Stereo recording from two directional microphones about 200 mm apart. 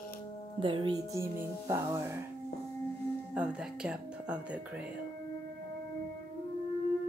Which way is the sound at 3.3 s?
5° right (ahead or behind).